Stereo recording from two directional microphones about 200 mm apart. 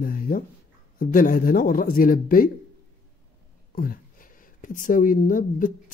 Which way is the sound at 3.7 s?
45° left (ahead or behind).